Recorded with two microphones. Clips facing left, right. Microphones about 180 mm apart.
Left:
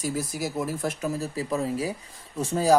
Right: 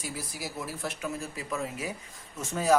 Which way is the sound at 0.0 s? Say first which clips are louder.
Left 9 dB; 45° left (ahead or behind).